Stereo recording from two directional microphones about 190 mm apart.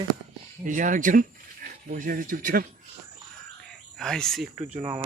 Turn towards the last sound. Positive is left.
turn(degrees=-25)  # may be behind; listen again after turning